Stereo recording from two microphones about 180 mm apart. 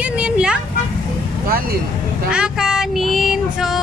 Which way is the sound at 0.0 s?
5° right (ahead or behind).